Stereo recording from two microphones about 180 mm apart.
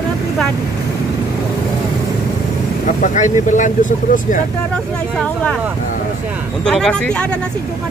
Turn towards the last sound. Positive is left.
turn(degrees=5)  # may be behind; listen again after turning